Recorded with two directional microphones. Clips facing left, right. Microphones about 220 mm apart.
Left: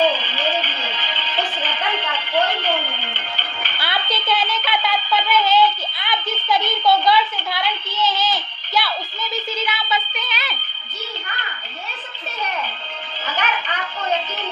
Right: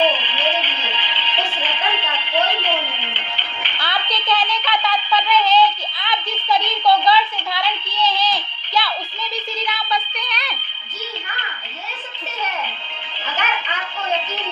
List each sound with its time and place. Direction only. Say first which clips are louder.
0.0 s music: even; 45° left (ahead or behind)
3.7 s music: even; 5° left (ahead or behind)
4.3 s a sound: right 1 dB; 5° left (ahead or behind)
5.5 s a woman's voice: right 1 dB; 5° left (ahead or behind)